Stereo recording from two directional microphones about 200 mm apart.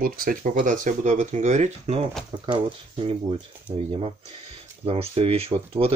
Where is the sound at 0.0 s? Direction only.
45° right (ahead or behind).